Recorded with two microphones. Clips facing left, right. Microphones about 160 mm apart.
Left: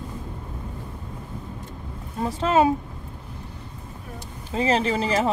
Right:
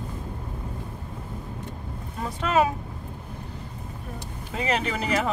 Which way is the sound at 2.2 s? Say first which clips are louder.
Left 3 dB; 30° left (ahead or behind).